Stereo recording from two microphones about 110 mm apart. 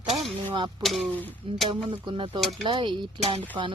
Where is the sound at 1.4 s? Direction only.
55° right (ahead or behind).